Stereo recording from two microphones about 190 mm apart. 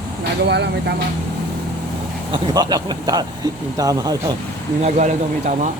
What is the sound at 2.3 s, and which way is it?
Speech, 20° right (ahead or behind).